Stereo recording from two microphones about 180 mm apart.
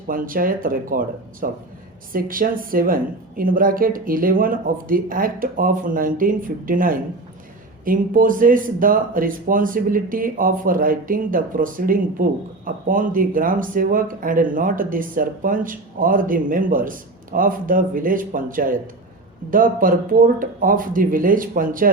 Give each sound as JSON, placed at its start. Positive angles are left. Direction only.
{"t": 0.1, "sound": "speech", "side_deg": -50}